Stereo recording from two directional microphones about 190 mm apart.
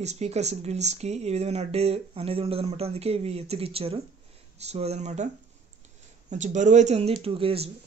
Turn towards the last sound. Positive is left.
turn(degrees=-30)  # may be behind; listen again after turning